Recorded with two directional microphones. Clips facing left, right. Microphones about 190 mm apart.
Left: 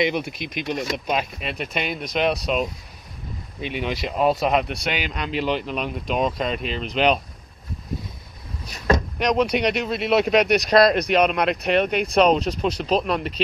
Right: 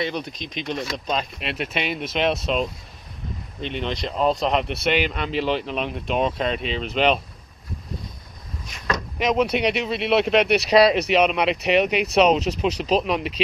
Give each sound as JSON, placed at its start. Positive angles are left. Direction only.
{"t": 0.0, "sound": "speech", "side_deg": 10}
{"t": 1.5, "sound": "speech", "side_deg": 0}
{"t": 8.6, "sound": "vehicle", "side_deg": 35}
{"t": 9.2, "sound": "speech", "side_deg": -5}